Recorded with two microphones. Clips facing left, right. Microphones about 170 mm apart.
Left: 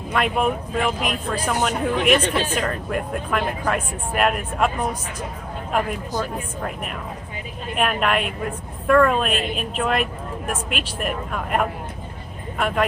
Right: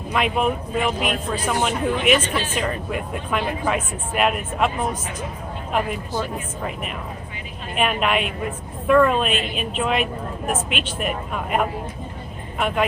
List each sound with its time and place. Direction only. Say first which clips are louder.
0.1 s a woman's voice: even; centre (ahead or behind)
6.6 s a woman's voice: even; centre (ahead or behind)